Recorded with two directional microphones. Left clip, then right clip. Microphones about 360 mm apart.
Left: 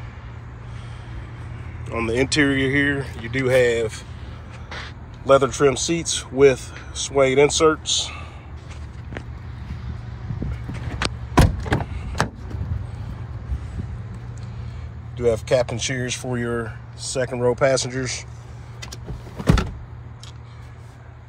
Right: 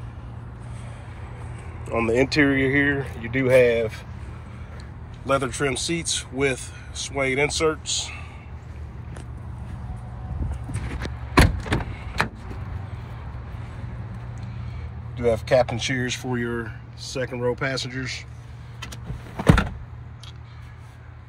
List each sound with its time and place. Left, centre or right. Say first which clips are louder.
1.9 s speech: right 1 dB; centre
5.2 s speech: left 8 dB; centre
11.3 s vehicle: right 1 dB; left
15.1 s speech: even; centre